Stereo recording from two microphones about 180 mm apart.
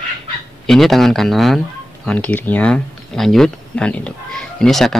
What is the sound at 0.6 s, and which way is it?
Speech, centre (ahead or behind).